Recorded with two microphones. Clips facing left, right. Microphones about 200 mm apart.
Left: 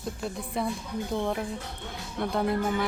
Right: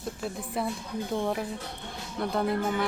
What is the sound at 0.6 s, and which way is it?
Speech, centre (ahead or behind).